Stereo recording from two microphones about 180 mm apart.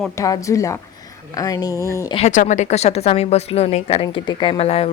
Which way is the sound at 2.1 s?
40° left (ahead or behind).